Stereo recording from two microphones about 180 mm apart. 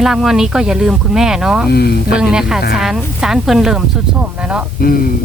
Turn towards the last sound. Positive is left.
turn(degrees=55)  # may be behind; listen again after turning